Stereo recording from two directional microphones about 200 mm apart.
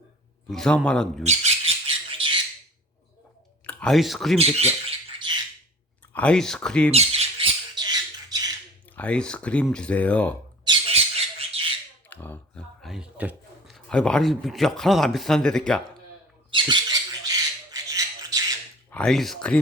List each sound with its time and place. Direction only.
0.5 s speech: centre (ahead or behind)
1.2 s speech: 35° right (ahead or behind)
3.7 s speech: 5° left (ahead or behind)
4.4 s bird: 30° right (ahead or behind)
6.1 s speech: 5° left (ahead or behind)
6.9 s squawk: 30° right (ahead or behind)
9.0 s speech: 5° left (ahead or behind)
10.7 s bird: 30° right (ahead or behind)
12.0 s speech: 10° left (ahead or behind)
16.5 s squawk: 25° right (ahead or behind)
18.9 s speech: 5° left (ahead or behind)